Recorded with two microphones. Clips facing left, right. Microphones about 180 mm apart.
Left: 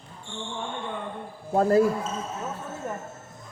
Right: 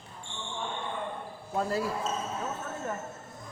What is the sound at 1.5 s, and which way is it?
Speech, 50° left (ahead or behind).